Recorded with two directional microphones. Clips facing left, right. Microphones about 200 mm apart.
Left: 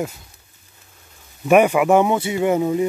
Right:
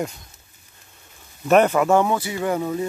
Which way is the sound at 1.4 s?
10° left (ahead or behind).